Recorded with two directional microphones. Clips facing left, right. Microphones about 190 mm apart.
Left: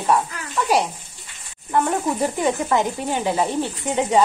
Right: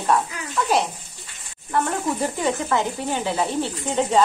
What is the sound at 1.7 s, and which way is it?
Speech, 15° left (ahead or behind).